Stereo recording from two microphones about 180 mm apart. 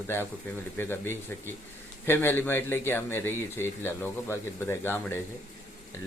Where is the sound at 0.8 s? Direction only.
10° left (ahead or behind).